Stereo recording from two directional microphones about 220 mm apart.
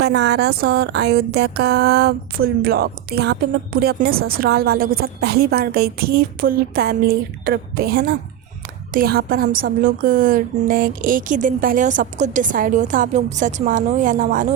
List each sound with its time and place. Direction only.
0.0 s a woman's voice: 50° right (ahead or behind); by 14.4 s 35° right (ahead or behind)